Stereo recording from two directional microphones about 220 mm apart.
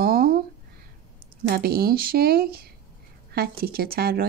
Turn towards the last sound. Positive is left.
turn(degrees=-45)  # may be behind; listen again after turning